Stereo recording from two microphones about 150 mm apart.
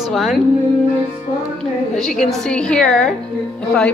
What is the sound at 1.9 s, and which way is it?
Speech, centre (ahead or behind).